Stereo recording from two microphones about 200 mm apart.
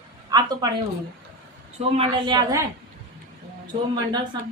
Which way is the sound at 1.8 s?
25° right (ahead or behind).